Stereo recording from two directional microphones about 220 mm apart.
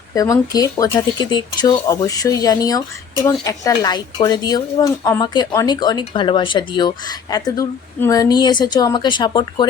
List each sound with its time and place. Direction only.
0.1 s speech: 15° left (ahead or behind)